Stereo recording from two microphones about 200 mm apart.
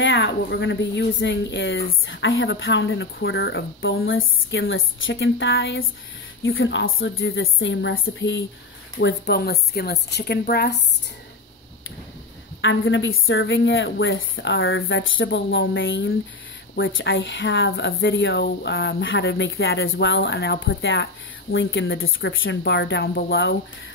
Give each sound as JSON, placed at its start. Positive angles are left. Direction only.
{"t": 0.0, "sound": "speech", "side_deg": 65}
{"t": 9.0, "sound": "a woman's voice", "side_deg": 55}
{"t": 12.6, "sound": "speech", "side_deg": 70}